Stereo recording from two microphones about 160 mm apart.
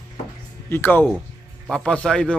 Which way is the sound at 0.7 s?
15° left (ahead or behind).